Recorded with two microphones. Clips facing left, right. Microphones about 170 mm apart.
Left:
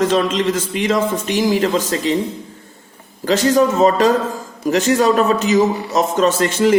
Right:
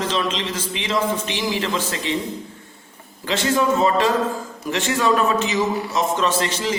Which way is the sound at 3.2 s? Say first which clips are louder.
Left 6 dB; 40° left (ahead or behind).